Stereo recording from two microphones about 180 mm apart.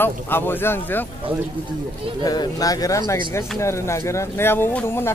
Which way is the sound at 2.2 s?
20° left (ahead or behind).